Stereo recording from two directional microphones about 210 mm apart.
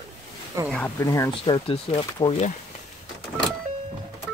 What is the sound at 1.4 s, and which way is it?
Speech, 25° left (ahead or behind).